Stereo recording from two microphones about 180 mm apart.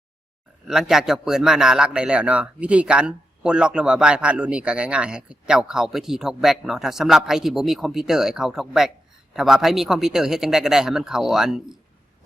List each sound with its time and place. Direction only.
0.7 s a man's voice: centre (ahead or behind)